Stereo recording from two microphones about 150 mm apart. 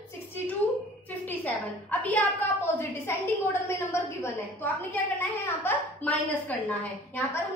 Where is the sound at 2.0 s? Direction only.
15° left (ahead or behind).